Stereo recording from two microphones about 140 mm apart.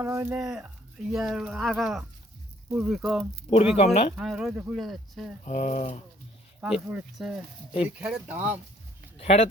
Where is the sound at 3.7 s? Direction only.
50° left (ahead or behind).